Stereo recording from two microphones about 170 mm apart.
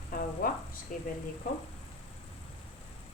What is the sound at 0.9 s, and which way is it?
Speech, 50° left (ahead or behind).